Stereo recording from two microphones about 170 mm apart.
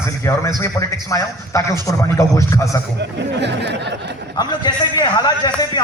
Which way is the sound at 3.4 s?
85° right.